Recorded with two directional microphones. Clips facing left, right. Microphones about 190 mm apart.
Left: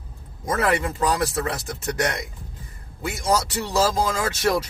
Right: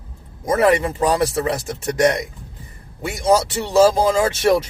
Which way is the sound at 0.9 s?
30° right (ahead or behind).